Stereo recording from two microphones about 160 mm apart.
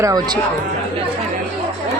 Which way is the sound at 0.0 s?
25° right (ahead or behind).